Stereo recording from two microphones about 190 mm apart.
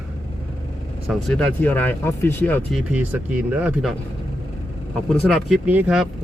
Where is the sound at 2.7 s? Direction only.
5° right (ahead or behind).